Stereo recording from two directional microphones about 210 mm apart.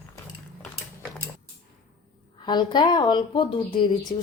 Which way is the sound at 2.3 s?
20° left (ahead or behind).